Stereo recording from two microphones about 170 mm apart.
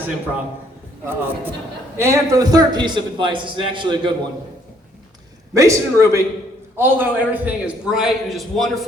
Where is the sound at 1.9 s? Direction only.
15° right (ahead or behind).